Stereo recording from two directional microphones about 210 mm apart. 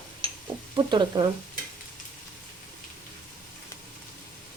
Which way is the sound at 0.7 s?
20° right (ahead or behind).